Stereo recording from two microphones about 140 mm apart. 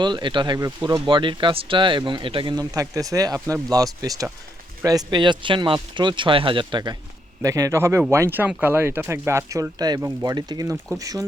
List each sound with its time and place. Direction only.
0.0 s speech: 35° right (ahead or behind)